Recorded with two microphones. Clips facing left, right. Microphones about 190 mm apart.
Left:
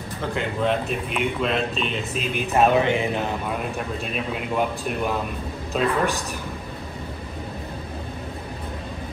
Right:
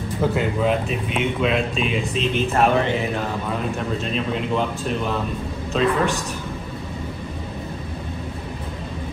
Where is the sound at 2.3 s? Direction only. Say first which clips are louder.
Left 1 dB; 15° left (ahead or behind).